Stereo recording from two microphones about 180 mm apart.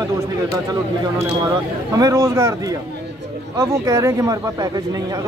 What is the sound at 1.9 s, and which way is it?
A man's voice, 20° right (ahead or behind).